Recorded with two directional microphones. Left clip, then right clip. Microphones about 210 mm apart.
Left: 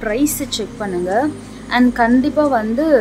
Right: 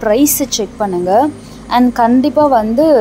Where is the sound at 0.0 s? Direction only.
15° right (ahead or behind).